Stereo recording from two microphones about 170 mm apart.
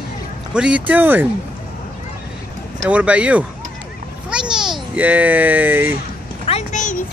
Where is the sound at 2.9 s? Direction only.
5° right (ahead or behind).